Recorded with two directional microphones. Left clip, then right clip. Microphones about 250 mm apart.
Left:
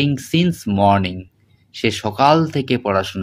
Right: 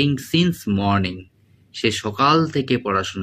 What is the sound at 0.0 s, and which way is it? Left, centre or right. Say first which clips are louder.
Speech: left 1 dB; centre.